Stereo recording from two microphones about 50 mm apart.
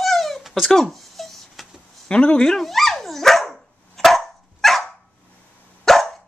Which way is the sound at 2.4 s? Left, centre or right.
Centre.